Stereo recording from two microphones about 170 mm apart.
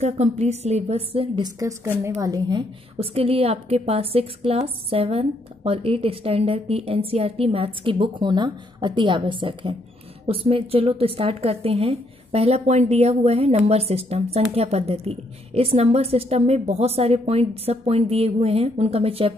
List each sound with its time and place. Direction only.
0.0 s a woman's voice: 40° right (ahead or behind); by 2.6 s 20° right (ahead or behind)
3.0 s a woman's voice: 35° right (ahead or behind)